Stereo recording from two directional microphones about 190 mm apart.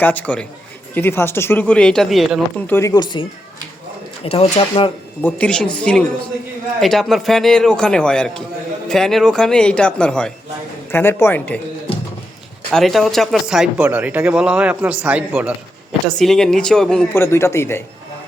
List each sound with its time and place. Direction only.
0.0 s speech: 10° left (ahead or behind)
2.6 s speech: 15° left (ahead or behind); by 4.9 s 30° left (ahead or behind)
5.2 s speech: 5° left (ahead or behind)
12.7 s speech: centre (ahead or behind)